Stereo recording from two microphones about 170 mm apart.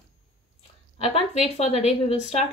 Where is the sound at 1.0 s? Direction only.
40° left (ahead or behind).